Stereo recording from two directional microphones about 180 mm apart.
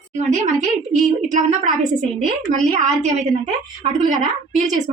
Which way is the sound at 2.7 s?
40° right (ahead or behind).